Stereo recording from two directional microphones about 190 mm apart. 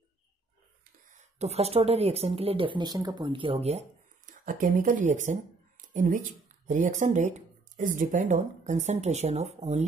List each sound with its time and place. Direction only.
1.1 s speech: 35° right (ahead or behind)
4.3 s speech: 45° right (ahead or behind)